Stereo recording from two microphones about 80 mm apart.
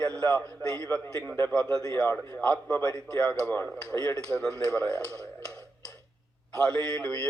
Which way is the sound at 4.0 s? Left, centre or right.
Right.